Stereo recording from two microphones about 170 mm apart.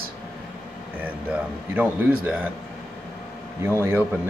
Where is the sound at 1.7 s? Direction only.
10° right (ahead or behind).